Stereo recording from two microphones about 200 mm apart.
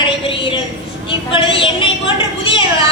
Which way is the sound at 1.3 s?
25° left (ahead or behind).